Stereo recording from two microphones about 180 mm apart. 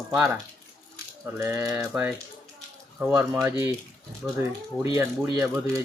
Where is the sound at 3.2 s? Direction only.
15° right (ahead or behind).